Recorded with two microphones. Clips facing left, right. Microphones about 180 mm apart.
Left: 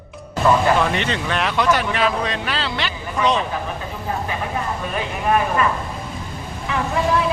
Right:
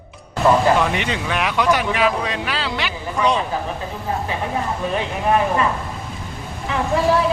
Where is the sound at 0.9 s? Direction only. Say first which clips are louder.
Even; 10° right (ahead or behind).